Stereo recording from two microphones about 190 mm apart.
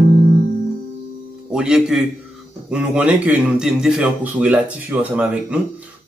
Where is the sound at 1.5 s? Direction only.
5° right (ahead or behind).